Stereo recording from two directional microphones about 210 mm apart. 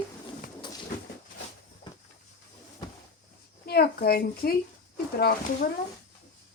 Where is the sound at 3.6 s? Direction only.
45° left (ahead or behind).